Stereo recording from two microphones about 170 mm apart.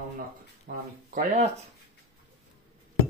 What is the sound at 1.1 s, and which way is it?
Speech, 45° right (ahead or behind).